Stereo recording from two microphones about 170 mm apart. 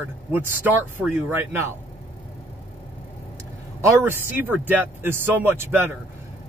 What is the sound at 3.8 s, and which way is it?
Speech, 15° right (ahead or behind).